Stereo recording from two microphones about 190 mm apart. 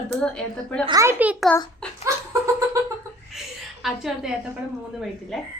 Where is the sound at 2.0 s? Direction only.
15° right (ahead or behind).